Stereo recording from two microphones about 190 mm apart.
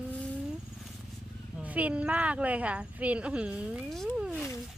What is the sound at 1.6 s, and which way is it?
Speech, 10° right (ahead or behind).